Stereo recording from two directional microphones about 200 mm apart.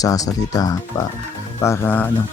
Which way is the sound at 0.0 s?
20° left (ahead or behind).